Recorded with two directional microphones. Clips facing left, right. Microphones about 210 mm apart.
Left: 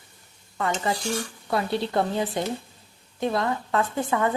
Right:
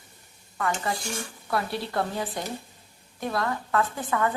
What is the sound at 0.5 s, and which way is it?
Stir, 25° left (ahead or behind).